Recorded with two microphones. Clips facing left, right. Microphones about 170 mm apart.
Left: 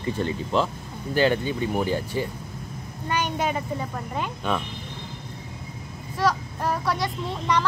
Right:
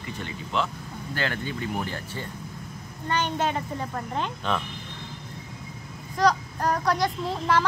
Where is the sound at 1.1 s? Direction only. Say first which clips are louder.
Left 9 dB; 20° left (ahead or behind).